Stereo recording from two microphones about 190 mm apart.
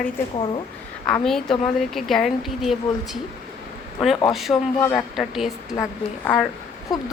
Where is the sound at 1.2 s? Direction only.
Centre (ahead or behind).